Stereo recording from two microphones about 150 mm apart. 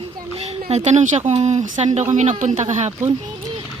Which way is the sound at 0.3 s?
40° right (ahead or behind).